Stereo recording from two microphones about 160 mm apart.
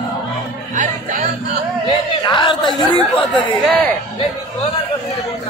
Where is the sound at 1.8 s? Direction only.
30° left (ahead or behind).